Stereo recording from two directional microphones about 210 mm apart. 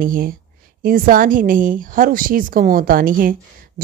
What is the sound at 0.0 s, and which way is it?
A woman's voice, 40° right (ahead or behind).